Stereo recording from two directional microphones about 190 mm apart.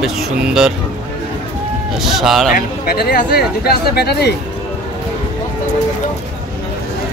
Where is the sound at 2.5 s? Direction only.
50° left (ahead or behind).